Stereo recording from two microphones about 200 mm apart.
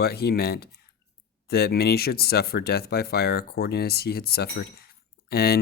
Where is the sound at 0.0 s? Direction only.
50° left (ahead or behind).